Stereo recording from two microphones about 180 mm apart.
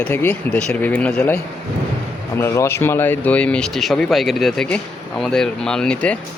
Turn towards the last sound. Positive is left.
turn(degrees=5)  # may be behind; listen again after turning